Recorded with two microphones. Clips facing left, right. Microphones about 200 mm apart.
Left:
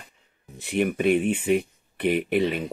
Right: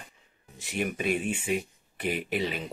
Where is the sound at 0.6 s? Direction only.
55° left (ahead or behind).